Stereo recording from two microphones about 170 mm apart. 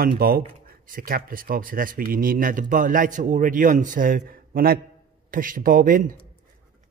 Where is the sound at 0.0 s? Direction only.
60° right (ahead or behind).